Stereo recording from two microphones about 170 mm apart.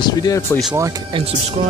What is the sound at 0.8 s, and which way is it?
Speech, 20° right (ahead or behind).